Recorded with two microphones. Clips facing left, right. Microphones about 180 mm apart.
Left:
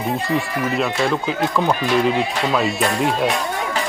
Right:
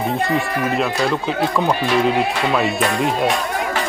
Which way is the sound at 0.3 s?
60° right (ahead or behind).